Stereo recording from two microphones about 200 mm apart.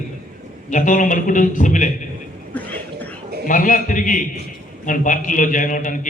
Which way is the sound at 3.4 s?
40° left (ahead or behind).